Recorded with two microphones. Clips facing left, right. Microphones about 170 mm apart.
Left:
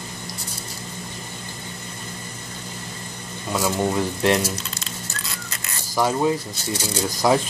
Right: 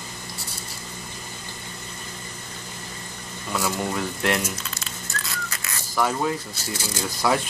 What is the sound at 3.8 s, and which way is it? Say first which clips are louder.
Speech: left 5 dB; 25° left (ahead or behind).